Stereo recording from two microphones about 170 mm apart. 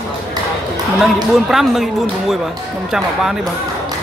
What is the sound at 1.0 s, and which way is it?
Speech, centre (ahead or behind).